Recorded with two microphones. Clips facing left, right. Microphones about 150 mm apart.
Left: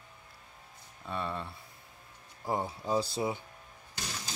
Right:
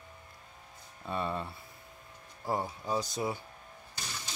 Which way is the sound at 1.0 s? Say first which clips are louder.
Right 2 dB; 5° right (ahead or behind).